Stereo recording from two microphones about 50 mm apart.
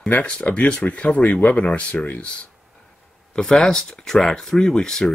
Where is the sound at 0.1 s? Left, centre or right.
Left.